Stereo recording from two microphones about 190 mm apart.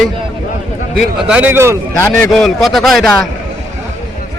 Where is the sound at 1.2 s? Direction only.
5° right (ahead or behind).